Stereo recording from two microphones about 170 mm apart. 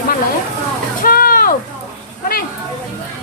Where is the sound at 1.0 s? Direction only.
55° left (ahead or behind).